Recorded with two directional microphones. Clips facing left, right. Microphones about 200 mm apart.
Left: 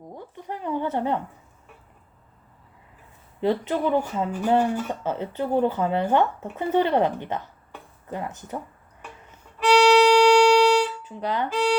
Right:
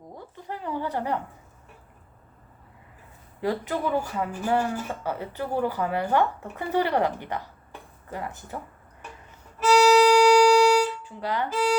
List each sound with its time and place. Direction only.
0.3 s a sound: 20° left (ahead or behind)
3.4 s speech: 20° left (ahead or behind)
9.6 s violin: 10° right (ahead or behind)
11.0 s speech: 20° left (ahead or behind)